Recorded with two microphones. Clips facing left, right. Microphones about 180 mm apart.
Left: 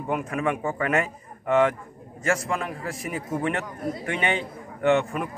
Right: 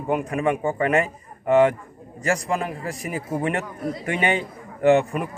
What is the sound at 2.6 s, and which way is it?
Speech, 35° right (ahead or behind).